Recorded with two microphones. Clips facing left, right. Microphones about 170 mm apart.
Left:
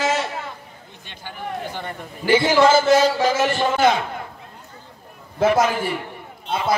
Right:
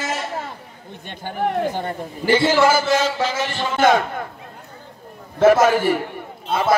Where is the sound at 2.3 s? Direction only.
15° left (ahead or behind).